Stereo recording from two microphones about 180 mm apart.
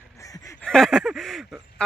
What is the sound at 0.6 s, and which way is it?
Speech, 5° left (ahead or behind).